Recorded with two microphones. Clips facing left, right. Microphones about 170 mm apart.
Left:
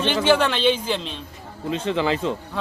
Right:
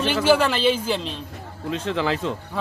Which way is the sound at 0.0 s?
5° right (ahead or behind).